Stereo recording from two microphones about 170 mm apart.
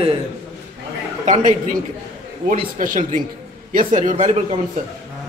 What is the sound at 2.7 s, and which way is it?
A man's voice, 50° right (ahead or behind).